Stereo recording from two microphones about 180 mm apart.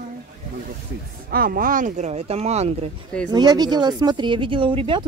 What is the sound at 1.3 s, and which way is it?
Speech, 55° right (ahead or behind).